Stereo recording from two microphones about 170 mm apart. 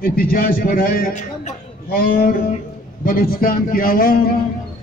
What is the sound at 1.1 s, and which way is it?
Speech, 45° left (ahead or behind).